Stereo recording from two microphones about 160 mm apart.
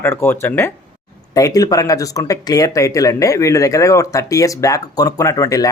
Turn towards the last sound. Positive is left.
turn(degrees=20)  # may be behind; listen again after turning